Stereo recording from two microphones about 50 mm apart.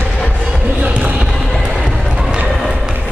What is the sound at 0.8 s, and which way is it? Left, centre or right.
Basketball bounce, right.